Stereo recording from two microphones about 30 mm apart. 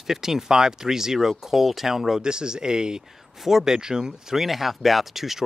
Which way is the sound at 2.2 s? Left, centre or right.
Right.